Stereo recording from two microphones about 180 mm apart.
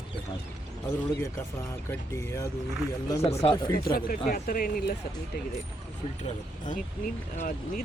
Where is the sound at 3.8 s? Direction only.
60° left (ahead or behind).